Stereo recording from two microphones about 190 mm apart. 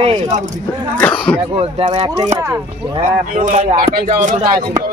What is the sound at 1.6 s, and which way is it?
Speech, 30° right (ahead or behind).